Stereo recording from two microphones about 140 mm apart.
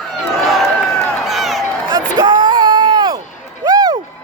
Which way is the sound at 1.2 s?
Centre (ahead or behind).